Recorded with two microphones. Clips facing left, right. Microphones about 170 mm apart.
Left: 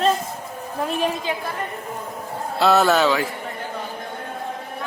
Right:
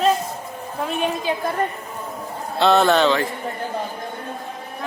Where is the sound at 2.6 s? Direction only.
5° left (ahead or behind).